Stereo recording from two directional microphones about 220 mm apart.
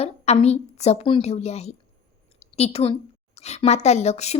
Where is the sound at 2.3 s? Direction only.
30° left (ahead or behind).